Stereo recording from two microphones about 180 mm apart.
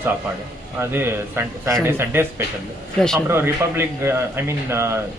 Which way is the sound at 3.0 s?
5° left (ahead or behind).